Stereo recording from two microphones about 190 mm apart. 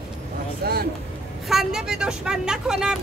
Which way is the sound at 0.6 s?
55° right (ahead or behind).